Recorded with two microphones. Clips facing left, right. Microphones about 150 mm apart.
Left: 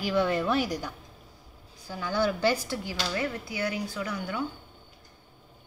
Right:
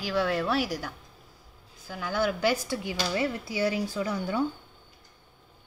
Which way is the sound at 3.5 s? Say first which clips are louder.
Right 4 dB; 25° right (ahead or behind).